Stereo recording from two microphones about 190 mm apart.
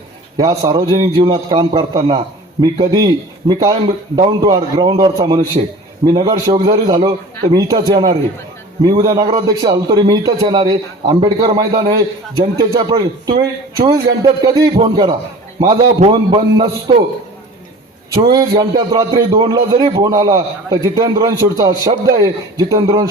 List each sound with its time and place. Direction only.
0.3 s a man's voice: 20° right (ahead or behind)
18.1 s a man's voice: 20° right (ahead or behind)